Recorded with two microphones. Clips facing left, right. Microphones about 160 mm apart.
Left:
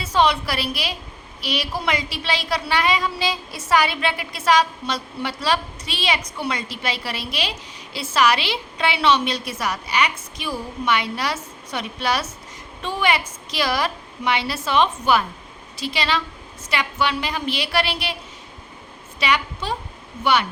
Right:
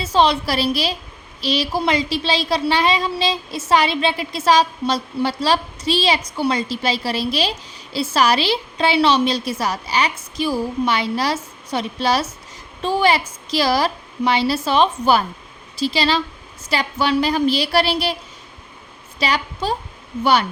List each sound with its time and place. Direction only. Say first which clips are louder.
0.0 s a woman's voice: right 3 dB; 30° right (ahead or behind)
19.2 s a woman's voice: right 1 dB; 35° right (ahead or behind)